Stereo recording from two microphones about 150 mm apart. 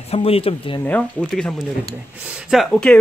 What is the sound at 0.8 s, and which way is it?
Speech, 10° left (ahead or behind).